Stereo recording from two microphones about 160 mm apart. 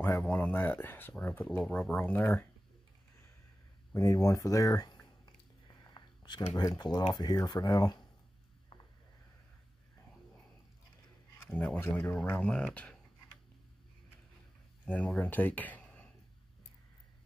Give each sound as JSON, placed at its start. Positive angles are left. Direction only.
{"t": 0.2, "sound": "speech", "side_deg": 10}
{"t": 3.9, "sound": "speech", "side_deg": 20}
{"t": 11.4, "sound": "speech", "side_deg": 5}
{"t": 14.9, "sound": "speech", "side_deg": 5}